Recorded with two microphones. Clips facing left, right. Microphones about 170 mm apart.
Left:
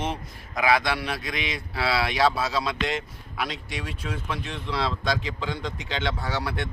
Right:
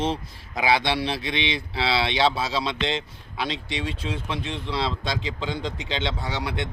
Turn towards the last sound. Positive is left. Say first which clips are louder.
# even
turn(degrees=-20)  # may be behind; listen again after turning